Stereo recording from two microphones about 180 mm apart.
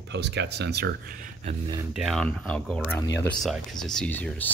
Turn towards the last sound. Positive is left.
turn(degrees=10)  # may be behind; listen again after turning